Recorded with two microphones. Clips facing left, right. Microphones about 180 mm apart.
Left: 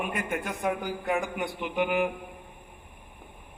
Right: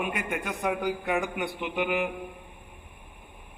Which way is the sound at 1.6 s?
40° left (ahead or behind).